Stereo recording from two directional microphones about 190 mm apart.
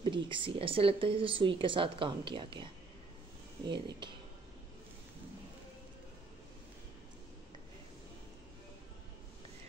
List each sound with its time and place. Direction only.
0.0 s speech: 25° right (ahead or behind)